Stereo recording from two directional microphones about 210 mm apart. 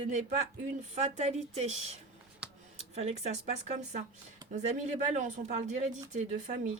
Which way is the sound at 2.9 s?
30° right (ahead or behind).